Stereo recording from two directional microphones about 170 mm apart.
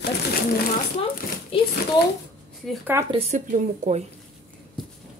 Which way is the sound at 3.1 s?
45° right (ahead or behind).